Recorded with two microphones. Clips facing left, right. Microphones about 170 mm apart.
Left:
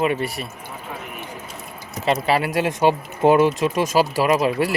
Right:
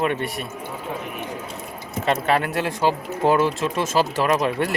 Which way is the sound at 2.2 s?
5° left (ahead or behind).